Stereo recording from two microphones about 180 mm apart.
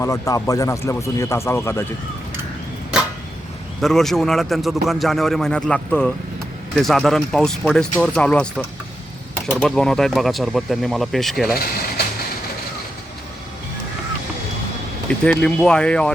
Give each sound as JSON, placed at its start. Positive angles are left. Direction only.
{"t": 0.0, "sound": "speech", "side_deg": 15}
{"t": 3.8, "sound": "a man's voice", "side_deg": 0}
{"t": 11.5, "sound": "a sound", "side_deg": 55}
{"t": 15.2, "sound": "a man's voice", "side_deg": 5}